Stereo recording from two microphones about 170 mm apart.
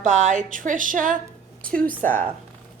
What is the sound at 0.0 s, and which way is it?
Speech, 45° right (ahead or behind).